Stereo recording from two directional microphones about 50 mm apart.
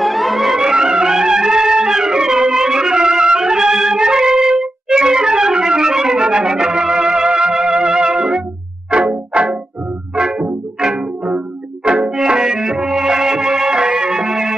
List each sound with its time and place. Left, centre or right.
0.0 s music: centre